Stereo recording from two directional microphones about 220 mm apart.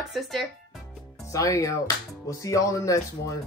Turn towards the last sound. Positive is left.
turn(degrees=15)  # may be behind; listen again after turning